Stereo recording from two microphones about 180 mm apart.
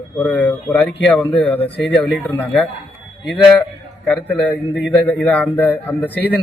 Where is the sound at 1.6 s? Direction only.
70° left (ahead or behind).